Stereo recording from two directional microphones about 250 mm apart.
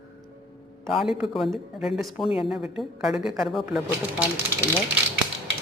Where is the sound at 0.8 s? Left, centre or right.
Centre.